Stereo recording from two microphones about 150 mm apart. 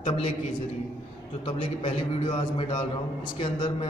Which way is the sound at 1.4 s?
40° left (ahead or behind).